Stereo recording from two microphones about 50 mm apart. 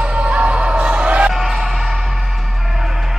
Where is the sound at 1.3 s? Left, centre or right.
Centre.